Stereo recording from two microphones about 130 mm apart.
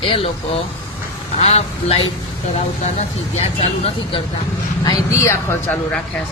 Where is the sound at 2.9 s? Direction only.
55° left (ahead or behind).